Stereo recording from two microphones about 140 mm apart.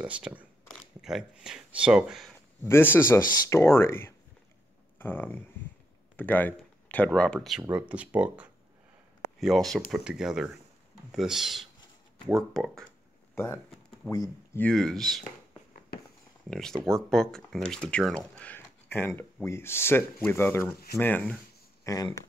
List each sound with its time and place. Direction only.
0.0 s speech: 10° right (ahead or behind)
2.6 s speech: 15° left (ahead or behind)
6.1 s a sound: 10° left (ahead or behind)
7.1 s speech: 5° left (ahead or behind)
13.3 s speech: 15° left (ahead or behind)
14.6 s speech: 5° left (ahead or behind)
16.4 s speech: 5° left (ahead or behind)
21.8 s speech: 25° left (ahead or behind)